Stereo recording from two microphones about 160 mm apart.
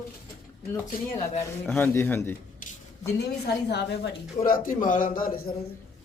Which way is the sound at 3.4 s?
90° left.